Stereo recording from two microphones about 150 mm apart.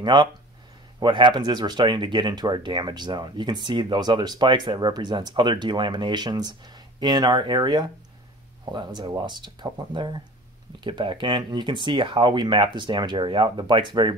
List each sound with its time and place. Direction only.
0.0 s speech: 30° right (ahead or behind)